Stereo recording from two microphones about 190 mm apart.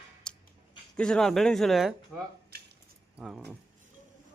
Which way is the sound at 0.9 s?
5° left (ahead or behind).